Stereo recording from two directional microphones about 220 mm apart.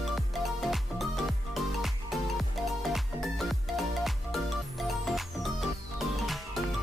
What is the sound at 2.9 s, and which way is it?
Music, centre (ahead or behind).